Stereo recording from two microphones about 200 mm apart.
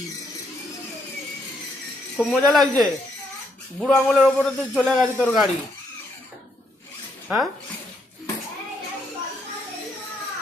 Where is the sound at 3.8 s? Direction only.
Centre (ahead or behind).